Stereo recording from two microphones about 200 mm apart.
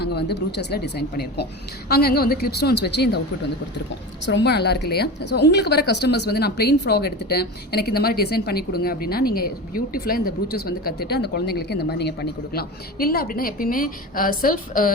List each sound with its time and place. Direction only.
0.0 s a woman's voice: 55° left (ahead or behind)
4.3 s a woman's voice: 60° left (ahead or behind)